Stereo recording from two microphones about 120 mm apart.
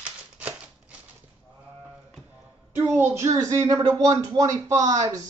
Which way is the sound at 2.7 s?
15° right (ahead or behind).